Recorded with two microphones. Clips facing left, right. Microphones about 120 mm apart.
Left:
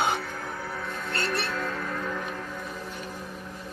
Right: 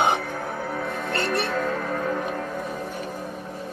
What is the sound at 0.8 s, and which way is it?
Music, 50° right (ahead or behind).